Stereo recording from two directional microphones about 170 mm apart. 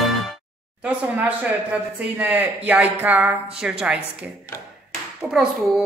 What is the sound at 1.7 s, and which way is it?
Speech, 10° right (ahead or behind).